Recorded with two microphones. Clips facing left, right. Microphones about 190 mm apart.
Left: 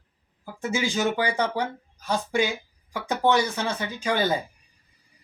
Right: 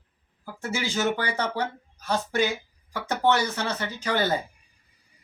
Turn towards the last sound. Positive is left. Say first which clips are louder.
# left 1 dB
turn(degrees=15)  # may be behind; listen again after turning